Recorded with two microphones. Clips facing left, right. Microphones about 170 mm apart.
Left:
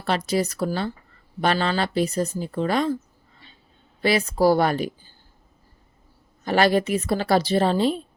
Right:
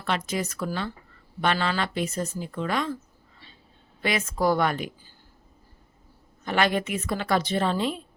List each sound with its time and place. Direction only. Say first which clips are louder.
0.0 s speech: left 5 dB; 35° left (ahead or behind)
4.0 s speech: left 6 dB; 35° left (ahead or behind)
6.4 s speech: left 5 dB; 35° left (ahead or behind)